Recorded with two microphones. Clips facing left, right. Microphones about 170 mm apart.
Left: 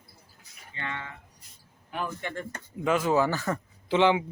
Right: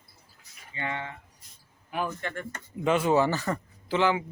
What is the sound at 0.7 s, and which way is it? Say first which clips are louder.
Speech: right 3 dB; 15° right (ahead or behind).